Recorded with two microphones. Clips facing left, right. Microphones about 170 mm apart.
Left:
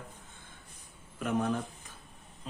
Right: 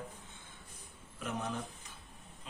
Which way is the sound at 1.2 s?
55° left (ahead or behind).